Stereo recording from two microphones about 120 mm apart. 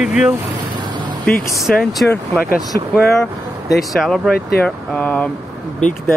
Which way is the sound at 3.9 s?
Centre (ahead or behind).